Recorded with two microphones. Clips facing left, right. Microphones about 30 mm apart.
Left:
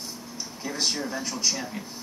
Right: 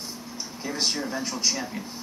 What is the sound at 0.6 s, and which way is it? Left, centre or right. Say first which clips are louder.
Speech: right 1 dB; centre.